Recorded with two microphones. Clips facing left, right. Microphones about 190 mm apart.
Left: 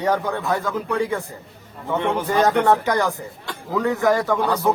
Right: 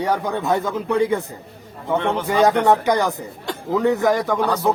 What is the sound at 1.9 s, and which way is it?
Speech, 10° left (ahead or behind).